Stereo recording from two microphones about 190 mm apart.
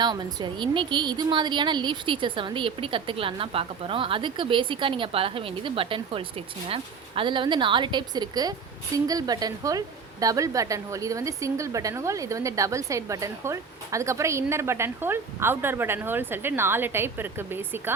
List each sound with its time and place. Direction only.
0.0 s a woman's voice: 20° right (ahead or behind)